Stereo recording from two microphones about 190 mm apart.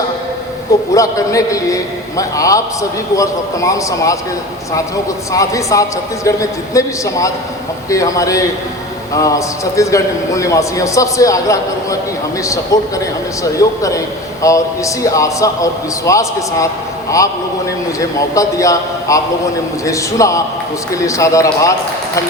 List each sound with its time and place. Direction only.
0.9 s a man's voice: 15° left (ahead or behind)
5.3 s a man's voice: 15° left (ahead or behind)
18.0 s a man's voice: 15° left (ahead or behind)